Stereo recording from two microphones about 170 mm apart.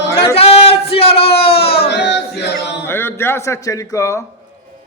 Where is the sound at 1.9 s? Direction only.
90° left.